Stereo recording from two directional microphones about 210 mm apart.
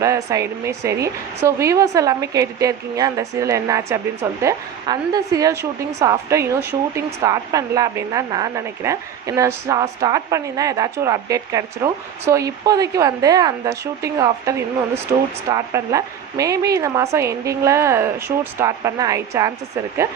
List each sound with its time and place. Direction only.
0.0 s a woman's voice: 15° right (ahead or behind)